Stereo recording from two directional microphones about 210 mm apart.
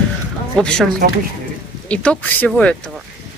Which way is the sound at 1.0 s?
45° right (ahead or behind).